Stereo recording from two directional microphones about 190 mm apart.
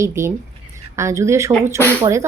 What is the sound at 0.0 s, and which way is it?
A woman's voice, 15° right (ahead or behind).